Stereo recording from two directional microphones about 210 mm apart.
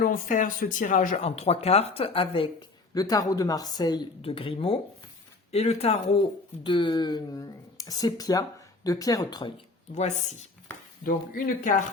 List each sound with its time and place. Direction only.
0.0 s speech: 40° left (ahead or behind); by 9.5 s 20° left (ahead or behind)
11.0 s speech: 40° left (ahead or behind)